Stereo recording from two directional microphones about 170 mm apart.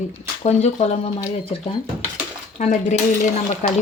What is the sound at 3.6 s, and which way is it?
Speech, 45° left (ahead or behind).